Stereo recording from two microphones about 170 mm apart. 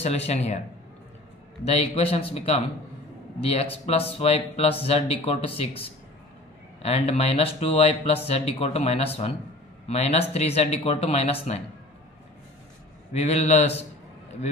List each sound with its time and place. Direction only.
0.0 s speech: 40° left (ahead or behind)
13.1 s speech: 40° left (ahead or behind)